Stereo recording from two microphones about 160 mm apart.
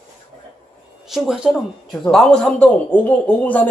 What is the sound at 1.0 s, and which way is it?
A man's voice, centre (ahead or behind).